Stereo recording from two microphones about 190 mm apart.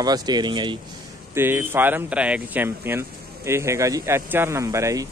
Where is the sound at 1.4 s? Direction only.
10° right (ahead or behind).